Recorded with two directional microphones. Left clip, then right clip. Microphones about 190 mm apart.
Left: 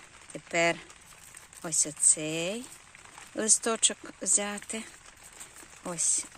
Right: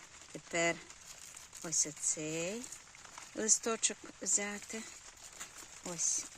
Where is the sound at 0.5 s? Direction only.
5° right (ahead or behind).